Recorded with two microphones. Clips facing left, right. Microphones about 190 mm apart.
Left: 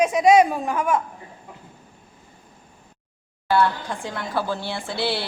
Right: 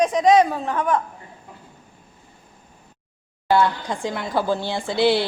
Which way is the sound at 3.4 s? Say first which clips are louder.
Right 2 dB; 15° right (ahead or behind).